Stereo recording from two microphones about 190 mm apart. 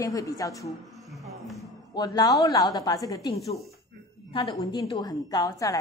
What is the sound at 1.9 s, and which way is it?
A woman's voice, 20° left (ahead or behind).